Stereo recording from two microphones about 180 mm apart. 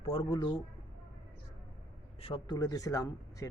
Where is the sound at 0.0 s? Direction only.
30° left (ahead or behind).